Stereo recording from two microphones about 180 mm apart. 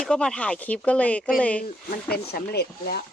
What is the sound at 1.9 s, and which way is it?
Speech, 60° left (ahead or behind).